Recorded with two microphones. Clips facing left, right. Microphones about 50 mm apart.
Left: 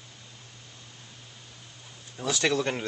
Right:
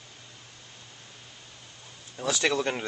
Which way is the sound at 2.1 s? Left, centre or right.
Centre.